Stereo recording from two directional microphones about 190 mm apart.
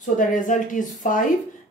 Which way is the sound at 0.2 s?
45° left (ahead or behind).